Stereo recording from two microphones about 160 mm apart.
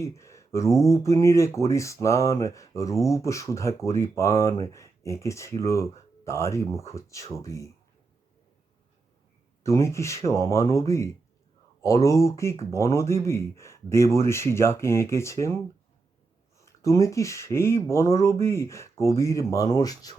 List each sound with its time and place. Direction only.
0.0 s speech: 20° left (ahead or behind)
9.6 s speech: 15° left (ahead or behind)
16.8 s speech: 20° left (ahead or behind)